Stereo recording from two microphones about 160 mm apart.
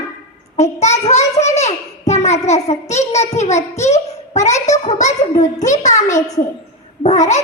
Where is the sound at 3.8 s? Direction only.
45° left (ahead or behind).